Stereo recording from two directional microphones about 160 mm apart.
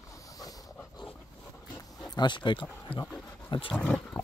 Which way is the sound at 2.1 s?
25° left (ahead or behind).